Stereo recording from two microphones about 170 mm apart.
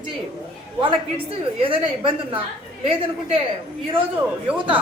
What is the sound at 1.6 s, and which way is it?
A woman's voice, 30° right (ahead or behind).